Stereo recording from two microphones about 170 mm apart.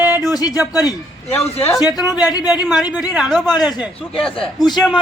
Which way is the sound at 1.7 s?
20° left (ahead or behind).